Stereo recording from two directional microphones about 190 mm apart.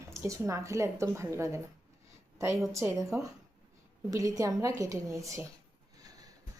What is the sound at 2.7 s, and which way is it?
Speech, 15° right (ahead or behind).